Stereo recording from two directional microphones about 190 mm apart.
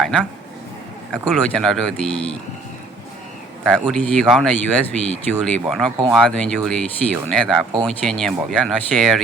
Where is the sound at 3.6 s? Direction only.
Centre (ahead or behind).